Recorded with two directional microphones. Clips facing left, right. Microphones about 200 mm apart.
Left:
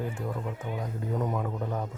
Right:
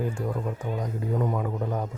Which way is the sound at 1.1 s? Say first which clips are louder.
Right 3 dB; centre (ahead or behind).